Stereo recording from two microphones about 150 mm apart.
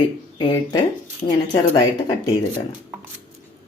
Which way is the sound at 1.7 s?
25° left (ahead or behind).